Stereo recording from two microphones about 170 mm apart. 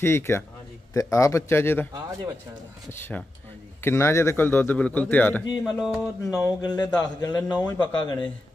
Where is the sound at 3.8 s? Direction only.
15° left (ahead or behind).